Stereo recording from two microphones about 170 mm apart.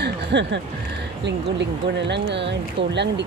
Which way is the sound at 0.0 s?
90° right.